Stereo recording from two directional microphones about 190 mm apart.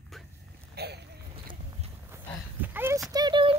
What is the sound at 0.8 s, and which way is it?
Boat, 60° right (ahead or behind).